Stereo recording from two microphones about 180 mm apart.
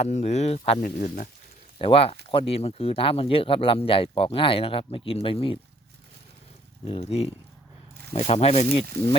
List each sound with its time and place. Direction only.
0.0 s speech: 40° left (ahead or behind)
0.8 s speech: 50° left (ahead or behind)
1.8 s speech: 30° left (ahead or behind)
6.8 s speech: 35° left (ahead or behind)